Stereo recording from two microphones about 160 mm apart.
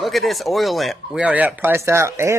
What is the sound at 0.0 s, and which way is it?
Speech, centre (ahead or behind).